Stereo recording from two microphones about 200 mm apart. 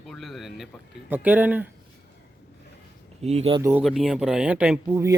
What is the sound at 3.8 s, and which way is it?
Speech, centre (ahead or behind).